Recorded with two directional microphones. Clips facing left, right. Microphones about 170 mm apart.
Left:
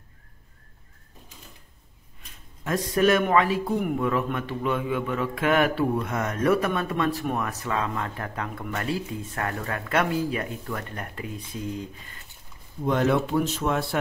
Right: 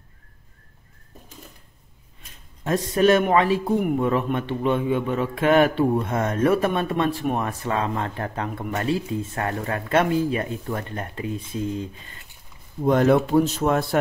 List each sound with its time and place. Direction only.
2.6 s a man's voice: 25° right (ahead or behind)
12.8 s speech: 40° right (ahead or behind)